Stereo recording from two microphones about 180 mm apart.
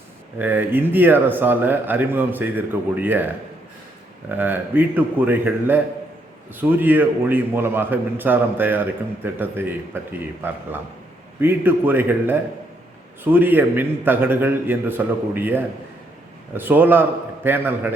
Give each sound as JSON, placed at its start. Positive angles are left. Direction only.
{"t": 0.3, "sound": "a man's voice", "side_deg": -10}
{"t": 4.3, "sound": "a man's voice", "side_deg": -10}